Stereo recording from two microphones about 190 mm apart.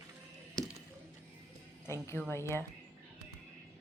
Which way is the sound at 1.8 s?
15° left (ahead or behind).